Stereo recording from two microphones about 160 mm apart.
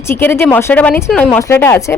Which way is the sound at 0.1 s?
15° left (ahead or behind).